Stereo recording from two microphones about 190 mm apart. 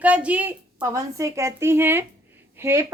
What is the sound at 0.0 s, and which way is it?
A woman's voice, 5° right (ahead or behind).